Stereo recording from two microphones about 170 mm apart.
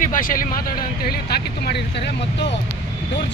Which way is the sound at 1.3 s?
70° left (ahead or behind).